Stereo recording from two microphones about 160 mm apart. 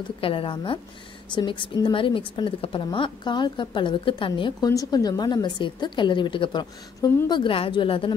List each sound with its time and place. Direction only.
0.2 s a woman's voice: 35° left (ahead or behind)